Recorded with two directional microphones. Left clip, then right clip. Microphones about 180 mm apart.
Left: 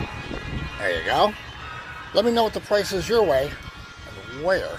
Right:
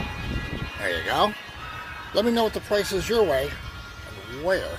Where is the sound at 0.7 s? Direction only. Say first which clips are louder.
Left 3 dB; 15° right (ahead or behind).